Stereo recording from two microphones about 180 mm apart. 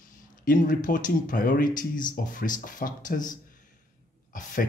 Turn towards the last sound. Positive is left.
turn(degrees=50)  # may be behind; listen again after turning